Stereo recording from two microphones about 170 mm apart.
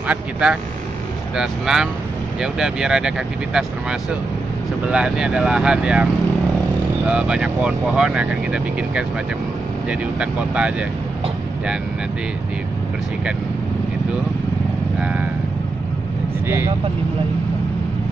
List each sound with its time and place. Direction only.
0.1 s speech: 5° right (ahead or behind)
4.8 s speech: 5° right (ahead or behind)
7.1 s speech: 5° right (ahead or behind)
15.0 s vehicle: 5° right (ahead or behind)
16.4 s speech: 15° right (ahead or behind)